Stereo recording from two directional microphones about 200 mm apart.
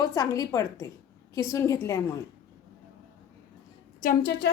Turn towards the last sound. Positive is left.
turn(degrees=50)  # may be behind; listen again after turning